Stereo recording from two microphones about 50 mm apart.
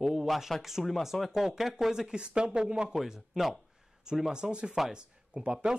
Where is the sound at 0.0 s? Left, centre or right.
Centre.